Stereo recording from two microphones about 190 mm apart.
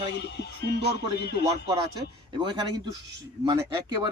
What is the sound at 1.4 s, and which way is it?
Speech, 20° right (ahead or behind).